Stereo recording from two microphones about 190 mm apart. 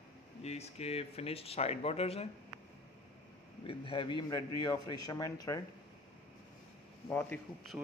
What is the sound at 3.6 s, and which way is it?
Speech, 30° left (ahead or behind).